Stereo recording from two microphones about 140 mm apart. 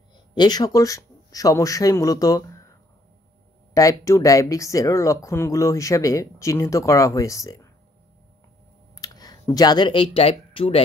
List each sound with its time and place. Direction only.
0.3 s speech: 30° left (ahead or behind)
3.7 s speech: 20° left (ahead or behind)
8.9 s speech: 25° left (ahead or behind)